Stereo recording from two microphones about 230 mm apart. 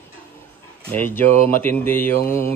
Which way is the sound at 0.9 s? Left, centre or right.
Centre.